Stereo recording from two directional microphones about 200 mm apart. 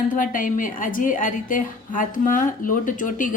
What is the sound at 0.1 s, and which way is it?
A woman's voice, 40° left (ahead or behind).